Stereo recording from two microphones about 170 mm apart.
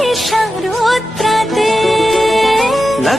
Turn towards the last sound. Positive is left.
turn(degrees=0)  # may be behind; listen again after turning